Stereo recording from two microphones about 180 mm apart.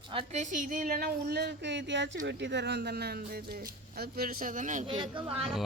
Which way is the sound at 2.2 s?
75° right (ahead or behind).